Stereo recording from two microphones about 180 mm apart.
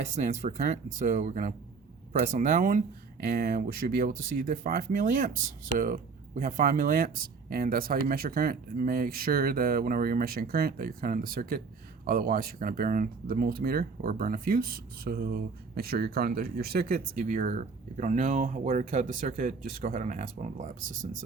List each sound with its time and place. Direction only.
0.2 s speech: 45° right (ahead or behind)